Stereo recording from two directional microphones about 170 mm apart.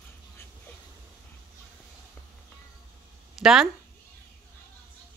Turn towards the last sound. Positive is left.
turn(degrees=-5)  # may be behind; listen again after turning